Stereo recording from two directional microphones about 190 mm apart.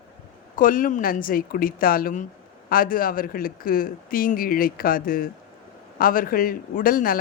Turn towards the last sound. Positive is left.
turn(degrees=50)  # may be behind; listen again after turning